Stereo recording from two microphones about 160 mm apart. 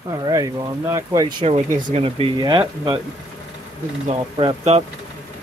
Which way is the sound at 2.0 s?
35° right (ahead or behind).